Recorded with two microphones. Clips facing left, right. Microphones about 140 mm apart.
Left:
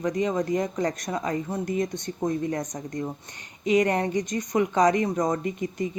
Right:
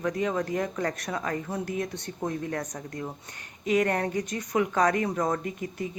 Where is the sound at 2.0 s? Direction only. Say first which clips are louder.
Left 5 dB; 5° right (ahead or behind).